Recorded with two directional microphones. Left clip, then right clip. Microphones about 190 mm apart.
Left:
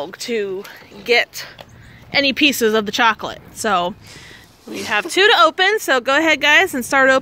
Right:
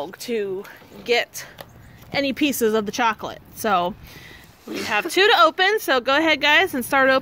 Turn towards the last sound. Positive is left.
turn(degrees=0)  # may be behind; listen again after turning